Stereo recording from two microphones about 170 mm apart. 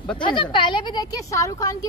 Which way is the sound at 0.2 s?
30° left (ahead or behind).